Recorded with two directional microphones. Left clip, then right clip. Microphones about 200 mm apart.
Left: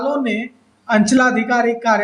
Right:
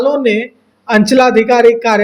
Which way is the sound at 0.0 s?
40° right (ahead or behind).